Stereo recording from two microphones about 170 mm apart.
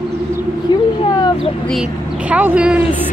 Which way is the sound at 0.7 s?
25° left (ahead or behind).